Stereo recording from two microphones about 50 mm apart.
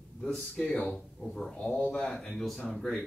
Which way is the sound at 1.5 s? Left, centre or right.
Left.